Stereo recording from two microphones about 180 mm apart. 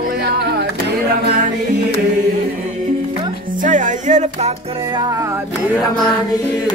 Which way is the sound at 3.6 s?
45° right (ahead or behind).